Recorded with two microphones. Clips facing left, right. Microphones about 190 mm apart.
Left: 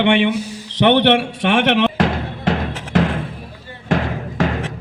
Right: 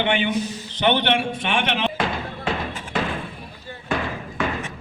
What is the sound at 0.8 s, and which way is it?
Music, 70° left (ahead or behind).